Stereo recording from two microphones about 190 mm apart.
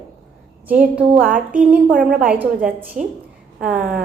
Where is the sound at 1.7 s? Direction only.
45° right (ahead or behind).